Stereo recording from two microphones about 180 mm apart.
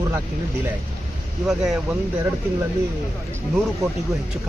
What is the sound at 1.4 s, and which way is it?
Speech, centre (ahead or behind).